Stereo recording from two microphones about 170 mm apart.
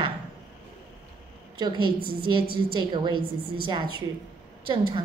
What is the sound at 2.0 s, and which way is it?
Speech, 60° right (ahead or behind).